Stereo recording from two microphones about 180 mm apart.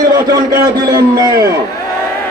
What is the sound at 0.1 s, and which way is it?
A man's voice, 20° right (ahead or behind).